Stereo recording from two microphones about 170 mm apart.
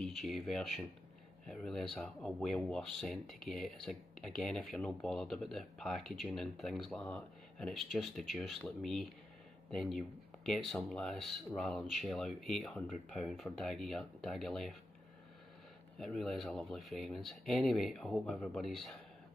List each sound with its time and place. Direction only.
0.0 s speech: centre (ahead or behind)
16.0 s speech: centre (ahead or behind)